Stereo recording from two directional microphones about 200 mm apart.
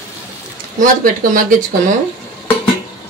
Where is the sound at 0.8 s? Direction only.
45° right (ahead or behind).